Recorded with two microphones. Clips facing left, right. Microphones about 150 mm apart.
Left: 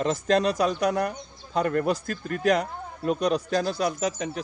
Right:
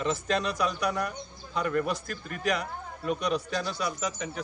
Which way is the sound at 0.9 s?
45° left (ahead or behind).